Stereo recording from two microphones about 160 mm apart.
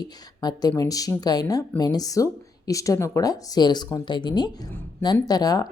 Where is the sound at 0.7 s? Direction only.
20° left (ahead or behind).